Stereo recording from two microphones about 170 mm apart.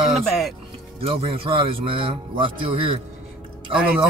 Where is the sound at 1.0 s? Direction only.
35° right (ahead or behind).